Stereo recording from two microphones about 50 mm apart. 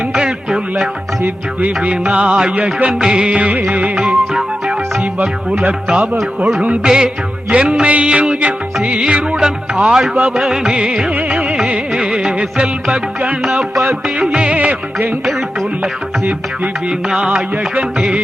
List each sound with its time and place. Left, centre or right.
0.1 s music: centre; by 3.9 s right
3.9 s music: centre
6.8 s speech: centre
7.5 s music: right
9.4 s speech: centre
10.2 s music: right
10.4 s music: centre; by 15.1 s right
17.1 s music: centre